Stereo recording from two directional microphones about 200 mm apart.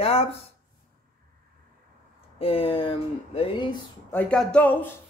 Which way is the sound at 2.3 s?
25° left (ahead or behind).